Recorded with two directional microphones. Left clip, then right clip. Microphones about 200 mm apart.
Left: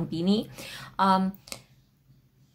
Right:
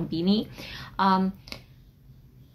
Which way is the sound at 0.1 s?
20° left (ahead or behind).